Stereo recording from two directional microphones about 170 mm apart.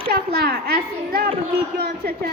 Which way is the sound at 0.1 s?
70° right (ahead or behind).